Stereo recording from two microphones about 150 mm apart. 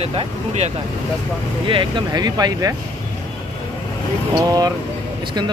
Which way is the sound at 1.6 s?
35° right (ahead or behind).